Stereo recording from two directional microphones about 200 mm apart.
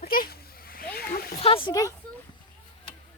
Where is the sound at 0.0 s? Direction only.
50° left (ahead or behind).